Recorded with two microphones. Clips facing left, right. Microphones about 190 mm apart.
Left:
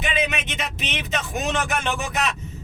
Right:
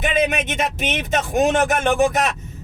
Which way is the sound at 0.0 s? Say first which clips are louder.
Right 6 dB; 50° right (ahead or behind).